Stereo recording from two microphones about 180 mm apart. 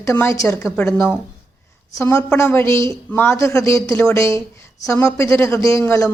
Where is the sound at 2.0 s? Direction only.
15° left (ahead or behind).